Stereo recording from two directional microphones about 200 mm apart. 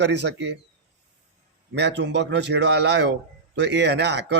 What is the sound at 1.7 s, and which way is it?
A man's voice, 60° right (ahead or behind).